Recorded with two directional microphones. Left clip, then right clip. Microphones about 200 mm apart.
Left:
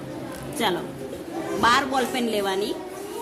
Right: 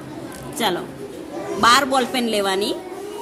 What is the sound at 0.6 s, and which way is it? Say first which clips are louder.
A woman's voice: right 3 dB; 10° right (ahead or behind).